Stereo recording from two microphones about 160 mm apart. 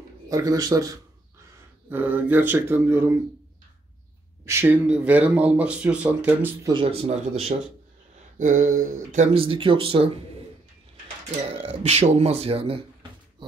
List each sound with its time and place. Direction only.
0.3 s speech: 25° right (ahead or behind)
1.9 s speech: 10° right (ahead or behind)
4.5 s speech: 15° right (ahead or behind)
6.7 s speech: 35° right (ahead or behind)
8.4 s speech: 50° right (ahead or behind)
9.3 s speech: 35° right (ahead or behind)
11.4 s speech: 40° right (ahead or behind)